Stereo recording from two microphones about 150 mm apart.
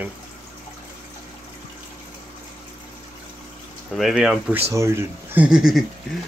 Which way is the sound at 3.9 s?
Centre (ahead or behind).